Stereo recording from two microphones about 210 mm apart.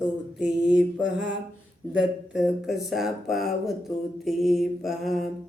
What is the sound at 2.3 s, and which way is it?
Speech, centre (ahead or behind).